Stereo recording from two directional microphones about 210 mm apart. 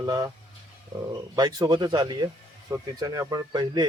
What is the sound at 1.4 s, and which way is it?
Speech, 20° right (ahead or behind).